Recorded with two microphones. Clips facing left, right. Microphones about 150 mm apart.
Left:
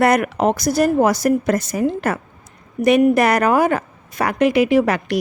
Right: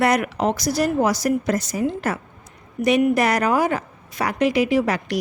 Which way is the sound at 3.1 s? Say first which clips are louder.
Left 4 dB; 55° left (ahead or behind).